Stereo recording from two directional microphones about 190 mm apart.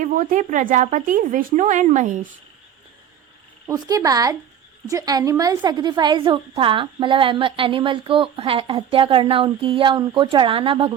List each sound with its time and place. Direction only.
0.0 s speech: 45° right (ahead or behind)
3.7 s a woman's voice: 20° right (ahead or behind)